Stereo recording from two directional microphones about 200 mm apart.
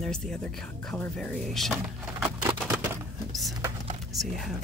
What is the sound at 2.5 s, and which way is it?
Typewriter, 15° right (ahead or behind).